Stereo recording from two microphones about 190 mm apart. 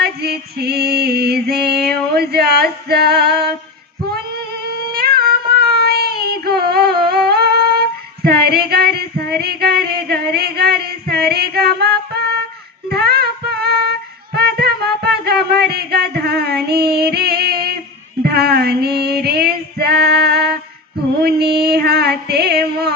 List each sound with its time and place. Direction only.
0.0 s music: 55° right (ahead or behind)
4.1 s child singing: 55° right (ahead or behind)
7.1 s female singing: 55° right (ahead or behind)
12.9 s music: 55° right (ahead or behind)
18.2 s female singing: 55° right (ahead or behind)
21.2 s music: 55° right (ahead or behind)